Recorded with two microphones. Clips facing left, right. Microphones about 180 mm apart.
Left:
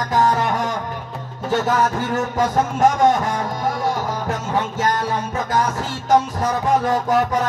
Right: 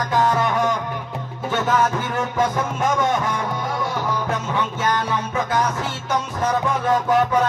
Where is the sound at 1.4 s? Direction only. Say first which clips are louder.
Left 1 dB; 40° left (ahead or behind).